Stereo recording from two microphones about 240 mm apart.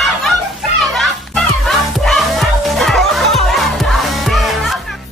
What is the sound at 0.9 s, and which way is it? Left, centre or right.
Music, centre.